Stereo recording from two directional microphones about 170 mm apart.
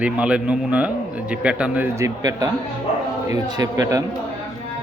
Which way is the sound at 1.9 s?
20° right (ahead or behind).